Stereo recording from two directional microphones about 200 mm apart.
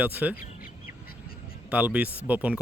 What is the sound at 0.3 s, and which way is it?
Bird, 45° left (ahead or behind).